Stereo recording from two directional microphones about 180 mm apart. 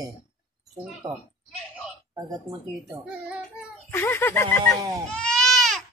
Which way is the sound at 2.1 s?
20° right (ahead or behind).